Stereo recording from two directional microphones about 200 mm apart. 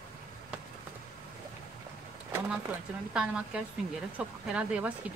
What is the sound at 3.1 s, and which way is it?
Speech, 5° right (ahead or behind).